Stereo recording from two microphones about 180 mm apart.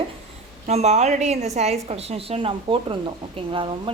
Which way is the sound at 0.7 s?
40° right (ahead or behind).